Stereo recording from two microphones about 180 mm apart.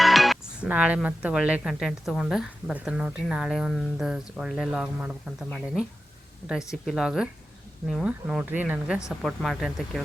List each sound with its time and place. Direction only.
0.0 s speech: centre (ahead or behind)
6.8 s speech: 5° right (ahead or behind)